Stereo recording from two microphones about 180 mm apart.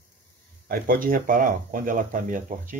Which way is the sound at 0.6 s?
55° right (ahead or behind).